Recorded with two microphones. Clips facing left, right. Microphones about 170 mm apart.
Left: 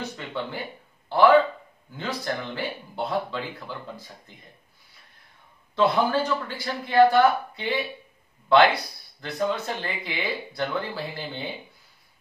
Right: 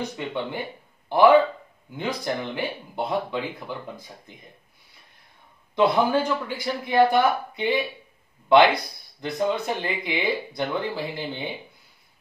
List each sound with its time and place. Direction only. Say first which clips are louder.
0.2 s speech: right 3 dB; 15° right (ahead or behind)
5.8 s speech: right 2 dB; 15° right (ahead or behind)
9.2 s speech: right 2 dB; 15° right (ahead or behind)